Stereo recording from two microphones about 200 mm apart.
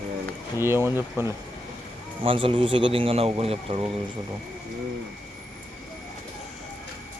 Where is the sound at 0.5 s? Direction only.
10° right (ahead or behind).